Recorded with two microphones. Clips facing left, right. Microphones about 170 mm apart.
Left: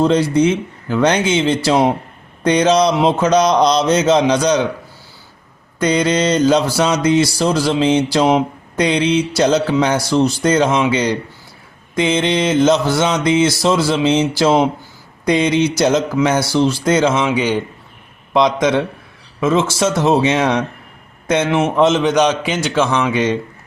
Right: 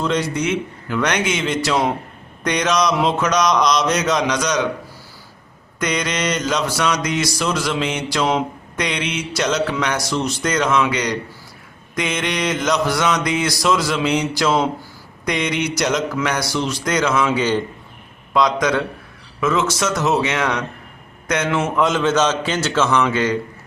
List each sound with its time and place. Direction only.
0.0 s mantra: 30° left (ahead or behind)
5.8 s speech: 30° left (ahead or behind)
11.9 s mantra: 25° left (ahead or behind)
17.2 s a man's voice: 10° left (ahead or behind)
18.3 s mantra: 20° left (ahead or behind)
21.2 s a man's voice: 25° left (ahead or behind)